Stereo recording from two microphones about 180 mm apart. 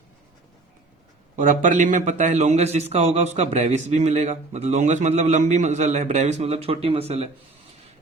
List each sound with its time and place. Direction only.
1.4 s a man's voice: 45° right (ahead or behind)